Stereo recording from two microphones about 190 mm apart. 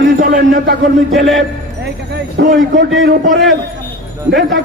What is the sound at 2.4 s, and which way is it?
Speech, 70° right (ahead or behind).